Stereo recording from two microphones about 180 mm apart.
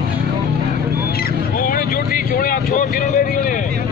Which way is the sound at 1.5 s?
50° left (ahead or behind).